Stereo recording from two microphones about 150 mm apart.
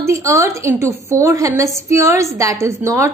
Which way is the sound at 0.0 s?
20° right (ahead or behind).